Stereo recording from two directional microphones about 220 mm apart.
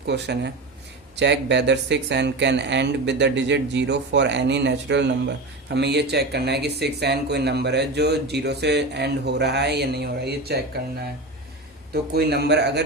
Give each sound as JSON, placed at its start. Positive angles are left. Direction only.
{"t": 0.0, "sound": "speech", "side_deg": -50}
{"t": 12.1, "sound": "speech", "side_deg": -45}